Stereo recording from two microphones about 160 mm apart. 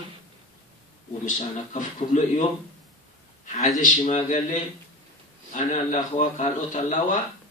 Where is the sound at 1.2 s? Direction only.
50° left (ahead or behind).